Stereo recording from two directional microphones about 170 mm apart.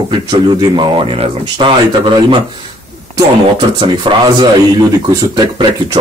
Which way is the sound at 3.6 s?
30° right (ahead or behind).